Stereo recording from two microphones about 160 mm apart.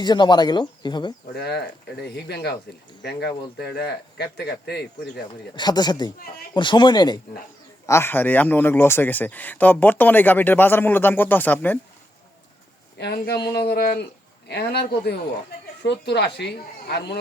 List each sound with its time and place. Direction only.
0.0 s speech: 25° left (ahead or behind)
1.3 s speech: 85° left
5.5 s speech: 25° left (ahead or behind)
6.1 s speech: 65° left (ahead or behind)
6.5 s speech: 30° left (ahead or behind)
7.9 s speech: 15° left (ahead or behind)
13.0 s speech: 90° left